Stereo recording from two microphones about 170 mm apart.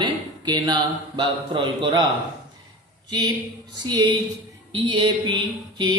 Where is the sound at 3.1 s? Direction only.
20° right (ahead or behind).